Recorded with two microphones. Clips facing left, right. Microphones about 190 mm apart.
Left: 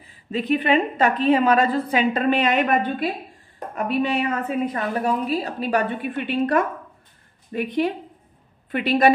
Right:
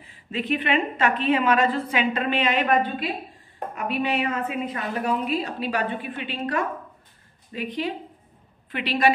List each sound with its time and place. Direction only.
0.3 s a woman's voice: 35° left (ahead or behind)